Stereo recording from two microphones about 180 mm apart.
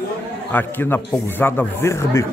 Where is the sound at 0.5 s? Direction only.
10° left (ahead or behind).